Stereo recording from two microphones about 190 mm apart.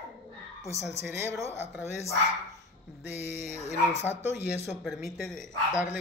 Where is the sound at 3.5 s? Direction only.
35° left (ahead or behind).